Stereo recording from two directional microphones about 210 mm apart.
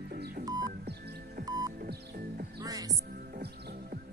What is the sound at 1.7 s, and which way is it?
Music, 45° right (ahead or behind).